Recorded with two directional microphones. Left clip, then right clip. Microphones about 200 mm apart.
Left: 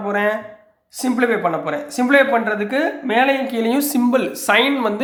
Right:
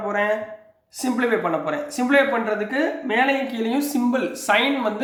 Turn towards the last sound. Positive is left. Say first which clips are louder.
# left 4 dB
turn(degrees=35)  # may be behind; listen again after turning